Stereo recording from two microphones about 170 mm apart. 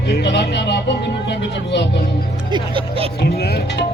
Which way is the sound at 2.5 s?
30° right (ahead or behind).